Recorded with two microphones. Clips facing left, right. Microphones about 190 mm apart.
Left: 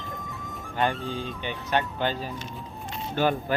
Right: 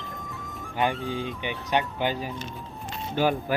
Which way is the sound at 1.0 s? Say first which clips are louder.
Right 2 dB; 15° right (ahead or behind).